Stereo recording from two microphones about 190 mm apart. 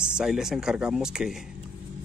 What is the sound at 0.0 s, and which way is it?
Speech, 5° right (ahead or behind).